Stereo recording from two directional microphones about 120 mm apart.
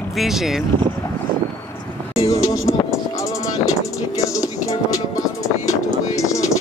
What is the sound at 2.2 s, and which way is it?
Music, 25° left (ahead or behind).